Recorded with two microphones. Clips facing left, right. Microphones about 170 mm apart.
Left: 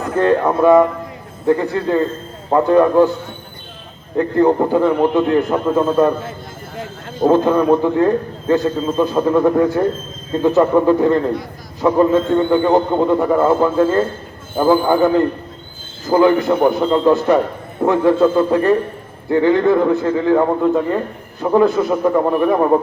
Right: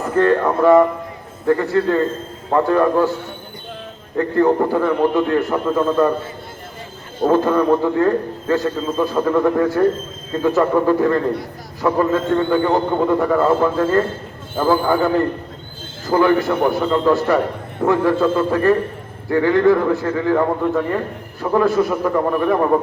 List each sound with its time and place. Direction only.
0.2 s a man's voice: 20° left (ahead or behind)
4.2 s a man's voice: 20° left (ahead or behind)
7.3 s a man's voice: 15° left (ahead or behind)